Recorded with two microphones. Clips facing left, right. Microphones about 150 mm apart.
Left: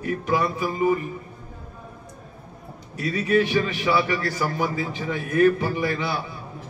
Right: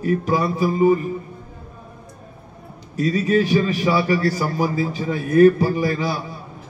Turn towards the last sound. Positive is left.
turn(degrees=-35)  # may be behind; listen again after turning